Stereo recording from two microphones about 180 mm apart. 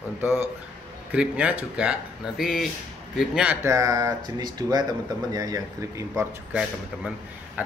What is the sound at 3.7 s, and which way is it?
Speech, 20° right (ahead or behind).